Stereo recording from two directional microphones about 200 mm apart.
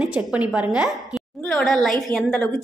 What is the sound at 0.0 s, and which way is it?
A woman's voice, 5° right (ahead or behind).